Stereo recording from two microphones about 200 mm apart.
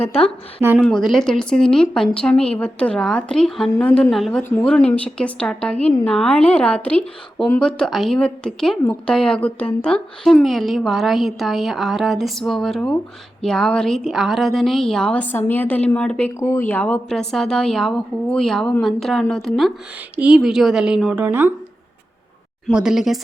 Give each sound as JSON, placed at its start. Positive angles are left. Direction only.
{"t": 0.0, "sound": "a woman's voice", "side_deg": 30}
{"t": 0.8, "sound": "a woman's voice", "side_deg": 0}
{"t": 22.7, "sound": "a woman's voice", "side_deg": -5}